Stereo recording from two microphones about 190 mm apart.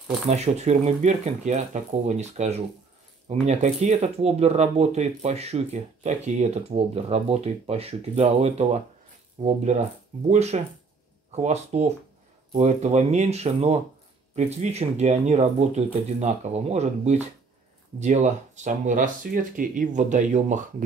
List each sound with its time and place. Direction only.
0.3 s speech: 35° right (ahead or behind)